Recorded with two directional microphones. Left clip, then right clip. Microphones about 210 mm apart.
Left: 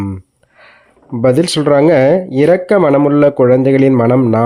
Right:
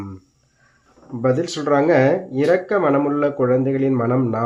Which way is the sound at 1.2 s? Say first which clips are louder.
Left 8 dB; 50° left (ahead or behind).